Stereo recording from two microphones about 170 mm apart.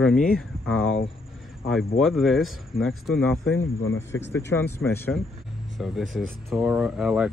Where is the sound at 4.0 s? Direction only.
90° left.